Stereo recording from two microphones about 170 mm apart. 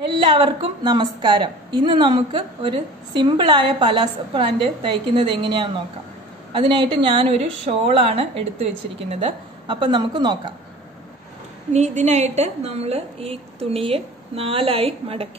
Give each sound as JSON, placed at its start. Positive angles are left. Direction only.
{"t": 0.1, "sound": "a woman's voice", "side_deg": -30}
{"t": 11.7, "sound": "a woman's voice", "side_deg": -40}